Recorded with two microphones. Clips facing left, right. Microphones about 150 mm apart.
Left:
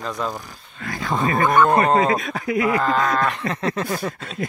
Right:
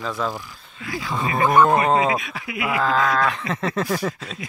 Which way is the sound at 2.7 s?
Centre (ahead or behind).